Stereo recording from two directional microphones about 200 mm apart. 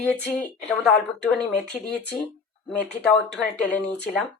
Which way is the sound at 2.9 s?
60° left (ahead or behind).